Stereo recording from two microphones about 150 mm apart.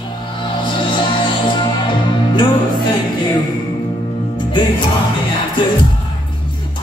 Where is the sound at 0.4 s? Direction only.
35° left (ahead or behind).